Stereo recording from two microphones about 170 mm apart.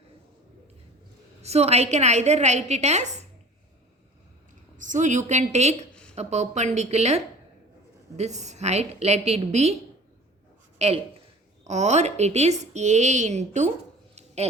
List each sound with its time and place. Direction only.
1.4 s a woman's voice: 40° right (ahead or behind)
4.8 s a woman's voice: 45° right (ahead or behind)
5.9 s a sound: 5° left (ahead or behind)
6.1 s a woman's voice: 40° right (ahead or behind)
10.8 s a woman's voice: 40° right (ahead or behind)